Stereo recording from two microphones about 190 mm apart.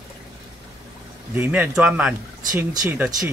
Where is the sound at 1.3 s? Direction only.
10° right (ahead or behind).